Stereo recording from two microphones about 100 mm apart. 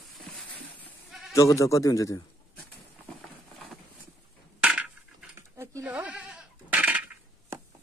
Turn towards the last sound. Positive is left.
turn(degrees=-15)  # may be behind; listen again after turning